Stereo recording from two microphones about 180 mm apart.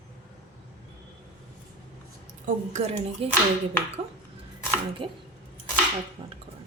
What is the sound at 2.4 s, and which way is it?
Speech, 40° right (ahead or behind).